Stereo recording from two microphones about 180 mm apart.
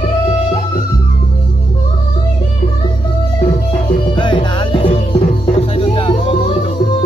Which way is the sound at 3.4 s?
30° left (ahead or behind).